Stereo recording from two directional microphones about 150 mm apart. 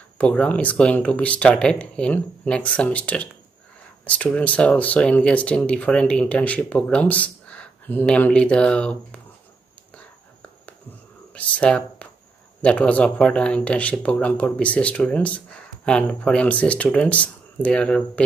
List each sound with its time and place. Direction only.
0.2 s speech: 10° left (ahead or behind)
11.3 s speech: 10° left (ahead or behind)